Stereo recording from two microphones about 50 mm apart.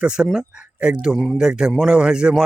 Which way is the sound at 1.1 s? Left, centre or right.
Centre.